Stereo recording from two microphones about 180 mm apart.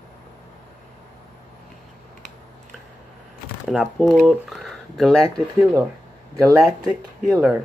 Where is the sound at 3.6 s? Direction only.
Centre (ahead or behind).